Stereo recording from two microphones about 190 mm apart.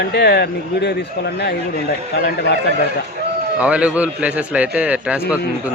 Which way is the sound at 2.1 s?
60° left (ahead or behind).